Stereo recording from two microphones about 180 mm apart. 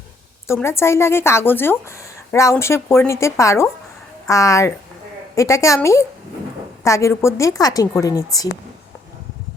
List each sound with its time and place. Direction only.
0.4 s a woman's voice: 15° left (ahead or behind)